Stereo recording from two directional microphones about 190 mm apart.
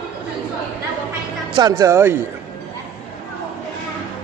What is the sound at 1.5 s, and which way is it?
Speech, 20° right (ahead or behind).